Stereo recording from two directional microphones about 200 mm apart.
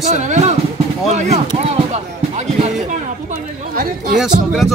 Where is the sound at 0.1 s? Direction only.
35° right (ahead or behind).